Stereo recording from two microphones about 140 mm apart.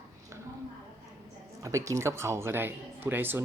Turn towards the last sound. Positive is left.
turn(degrees=-15)  # may be behind; listen again after turning